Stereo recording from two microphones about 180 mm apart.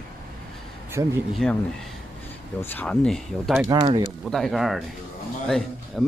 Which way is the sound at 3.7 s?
25° right (ahead or behind).